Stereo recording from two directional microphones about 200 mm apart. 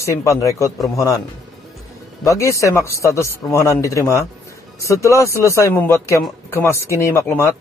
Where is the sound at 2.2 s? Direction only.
15° left (ahead or behind).